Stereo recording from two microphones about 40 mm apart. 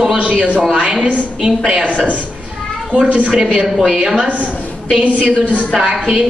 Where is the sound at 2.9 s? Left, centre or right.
Right.